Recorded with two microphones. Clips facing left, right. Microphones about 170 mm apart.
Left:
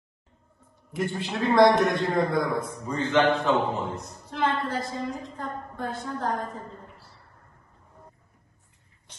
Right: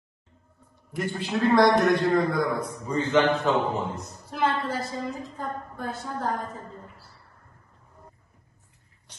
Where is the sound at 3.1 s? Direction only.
25° right (ahead or behind).